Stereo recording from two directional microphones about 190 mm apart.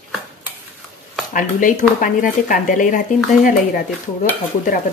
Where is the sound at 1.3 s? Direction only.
45° left (ahead or behind).